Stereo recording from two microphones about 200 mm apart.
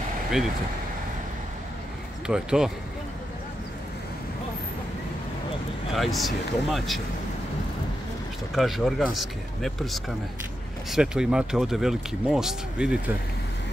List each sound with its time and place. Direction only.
2.2 s speech: 5° right (ahead or behind)
5.9 s speech: centre (ahead or behind)
8.5 s speech: centre (ahead or behind)